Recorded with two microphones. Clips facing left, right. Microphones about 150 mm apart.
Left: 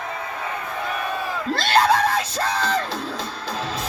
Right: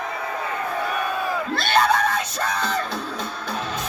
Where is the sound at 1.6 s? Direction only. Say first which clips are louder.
Left 2 dB; 35° left (ahead or behind).